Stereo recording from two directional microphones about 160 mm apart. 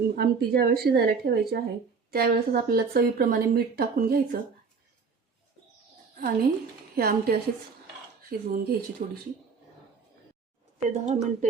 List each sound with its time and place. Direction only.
0.2 s speech: 75° right (ahead or behind)
6.1 s speech: 65° right (ahead or behind)
10.8 s speech: 45° right (ahead or behind)